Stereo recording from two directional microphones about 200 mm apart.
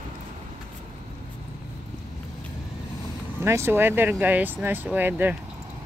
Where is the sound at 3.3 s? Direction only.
10° right (ahead or behind).